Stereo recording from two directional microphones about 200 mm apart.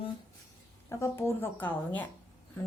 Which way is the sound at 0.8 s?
15° left (ahead or behind).